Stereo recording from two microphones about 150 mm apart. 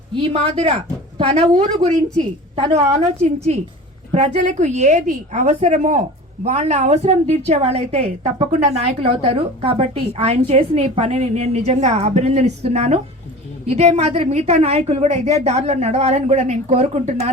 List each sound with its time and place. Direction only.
0.2 s a woman's voice: 45° right (ahead or behind)